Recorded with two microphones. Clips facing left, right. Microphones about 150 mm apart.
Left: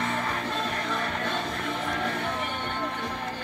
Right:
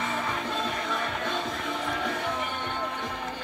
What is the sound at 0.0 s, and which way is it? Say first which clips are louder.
Music: left 1 dB; 5° right (ahead or behind).